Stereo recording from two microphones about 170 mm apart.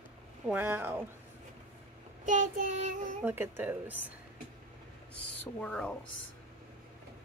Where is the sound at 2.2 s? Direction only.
50° right (ahead or behind).